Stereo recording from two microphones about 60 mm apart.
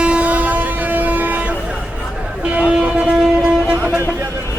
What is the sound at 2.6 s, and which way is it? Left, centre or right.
Music, centre.